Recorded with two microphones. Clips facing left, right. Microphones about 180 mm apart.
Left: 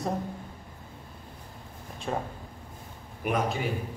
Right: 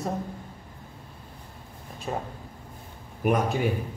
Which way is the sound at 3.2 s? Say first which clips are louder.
Right 4 dB; 45° right (ahead or behind).